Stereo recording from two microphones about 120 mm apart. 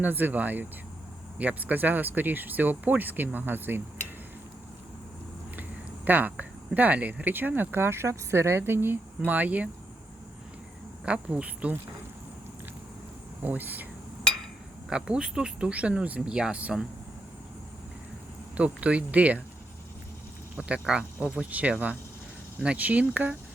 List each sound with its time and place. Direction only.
0.0 s speech: 15° right (ahead or behind)
6.1 s speech: 15° right (ahead or behind)
11.0 s speech: 10° right (ahead or behind)
13.4 s speech: 15° right (ahead or behind)
14.8 s speech: 5° right (ahead or behind)
18.5 s speech: 10° right (ahead or behind)
20.6 s speech: 10° right (ahead or behind)